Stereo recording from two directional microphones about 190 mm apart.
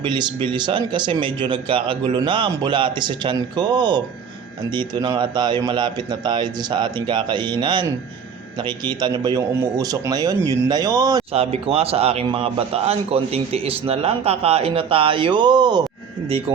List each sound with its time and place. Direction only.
0.0 s speech: 25° right (ahead or behind)
11.3 s a man's voice: 30° right (ahead or behind)